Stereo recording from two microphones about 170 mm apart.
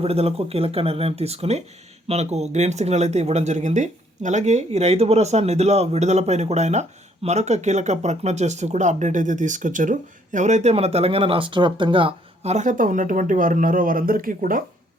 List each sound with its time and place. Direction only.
0.0 s speech: 35° right (ahead or behind); by 14.6 s 55° right (ahead or behind)